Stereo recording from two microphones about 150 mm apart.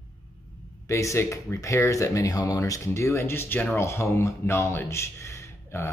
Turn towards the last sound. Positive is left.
turn(degrees=20)  # may be behind; listen again after turning